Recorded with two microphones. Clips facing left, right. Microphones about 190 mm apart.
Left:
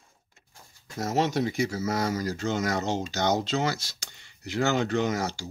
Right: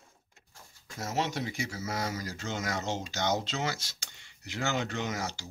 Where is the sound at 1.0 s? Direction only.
40° left (ahead or behind).